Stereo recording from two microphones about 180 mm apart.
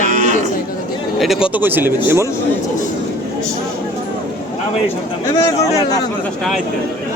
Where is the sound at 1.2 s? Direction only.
5° right (ahead or behind).